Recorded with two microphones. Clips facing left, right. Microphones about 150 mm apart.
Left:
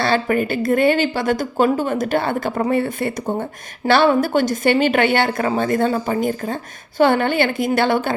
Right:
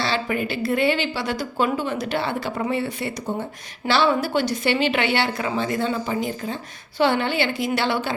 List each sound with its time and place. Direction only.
0.0 s speech: 50° left (ahead or behind)